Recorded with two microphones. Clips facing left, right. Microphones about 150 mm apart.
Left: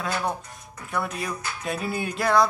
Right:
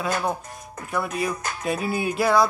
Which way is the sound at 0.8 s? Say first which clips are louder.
Right 3 dB; centre (ahead or behind).